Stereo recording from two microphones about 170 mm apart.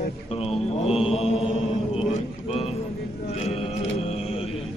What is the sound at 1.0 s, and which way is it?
Mantra, 40° left (ahead or behind).